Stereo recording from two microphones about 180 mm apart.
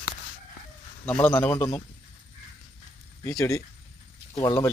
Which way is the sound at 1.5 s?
20° left (ahead or behind).